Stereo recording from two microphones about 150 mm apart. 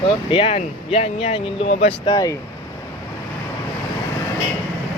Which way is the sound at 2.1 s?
25° left (ahead or behind).